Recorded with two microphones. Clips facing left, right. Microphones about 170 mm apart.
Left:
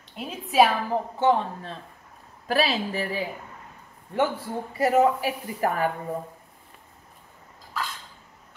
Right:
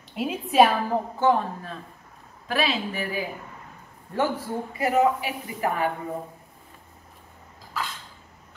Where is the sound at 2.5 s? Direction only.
35° left (ahead or behind).